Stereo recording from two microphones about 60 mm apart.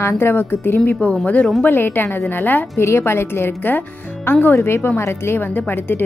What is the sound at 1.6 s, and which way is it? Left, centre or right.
A woman's voice, left.